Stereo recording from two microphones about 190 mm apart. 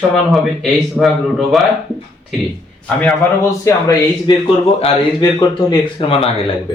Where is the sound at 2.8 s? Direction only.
Centre (ahead or behind).